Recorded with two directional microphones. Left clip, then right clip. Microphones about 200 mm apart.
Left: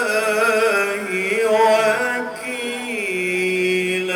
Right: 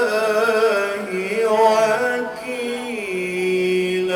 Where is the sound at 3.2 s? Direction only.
50° left (ahead or behind).